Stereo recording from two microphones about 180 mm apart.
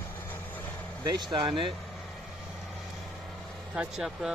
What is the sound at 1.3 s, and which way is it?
Speech, 30° right (ahead or behind).